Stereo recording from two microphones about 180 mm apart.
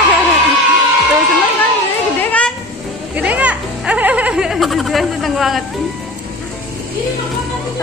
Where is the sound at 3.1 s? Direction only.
10° right (ahead or behind).